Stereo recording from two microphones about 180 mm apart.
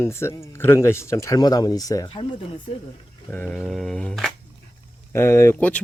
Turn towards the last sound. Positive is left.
turn(degrees=10)  # may be behind; listen again after turning